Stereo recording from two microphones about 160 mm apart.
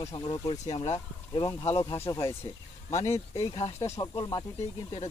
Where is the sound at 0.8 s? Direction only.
25° left (ahead or behind).